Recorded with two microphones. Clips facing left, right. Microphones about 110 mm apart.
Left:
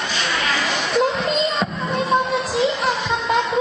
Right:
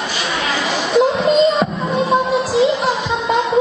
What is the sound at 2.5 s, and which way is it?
Music, centre (ahead or behind).